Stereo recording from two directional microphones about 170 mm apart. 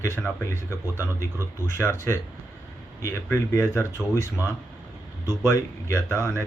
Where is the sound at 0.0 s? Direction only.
15° left (ahead or behind).